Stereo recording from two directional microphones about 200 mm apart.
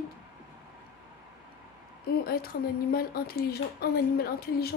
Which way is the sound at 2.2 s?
50° left (ahead or behind).